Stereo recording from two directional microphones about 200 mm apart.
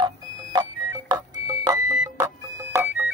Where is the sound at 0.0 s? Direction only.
20° right (ahead or behind).